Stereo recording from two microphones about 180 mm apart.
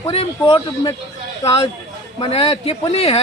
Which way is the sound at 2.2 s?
35° left (ahead or behind).